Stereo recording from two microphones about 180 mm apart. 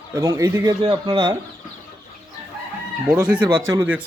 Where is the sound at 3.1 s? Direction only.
5° right (ahead or behind).